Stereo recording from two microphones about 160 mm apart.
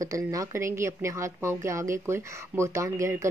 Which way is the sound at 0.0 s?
20° right (ahead or behind).